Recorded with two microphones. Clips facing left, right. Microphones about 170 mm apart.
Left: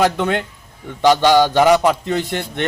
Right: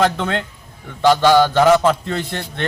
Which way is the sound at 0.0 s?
15° left (ahead or behind).